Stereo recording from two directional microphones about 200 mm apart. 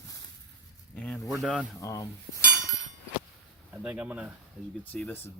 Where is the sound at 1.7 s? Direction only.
15° left (ahead or behind).